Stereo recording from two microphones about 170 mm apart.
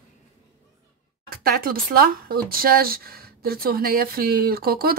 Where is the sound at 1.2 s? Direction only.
60° right (ahead or behind).